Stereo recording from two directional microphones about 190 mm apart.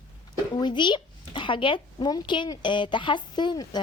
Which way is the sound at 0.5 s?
25° left (ahead or behind).